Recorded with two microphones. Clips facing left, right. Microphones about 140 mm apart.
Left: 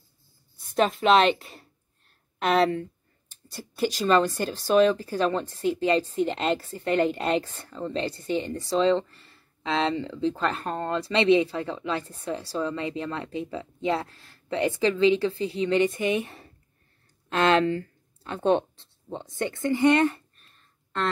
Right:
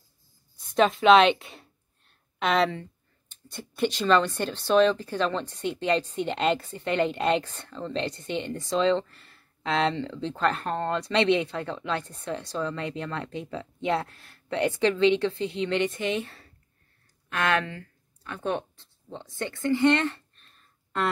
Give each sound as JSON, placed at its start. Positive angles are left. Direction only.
{"t": 0.7, "sound": "speech", "side_deg": 0}
{"t": 2.3, "sound": "speech", "side_deg": 45}
{"t": 3.5, "sound": "a woman's voice", "side_deg": 5}
{"t": 15.4, "sound": "a woman's voice", "side_deg": 35}
{"t": 15.9, "sound": "a woman's voice", "side_deg": 15}
{"t": 20.5, "sound": "a sound", "side_deg": -10}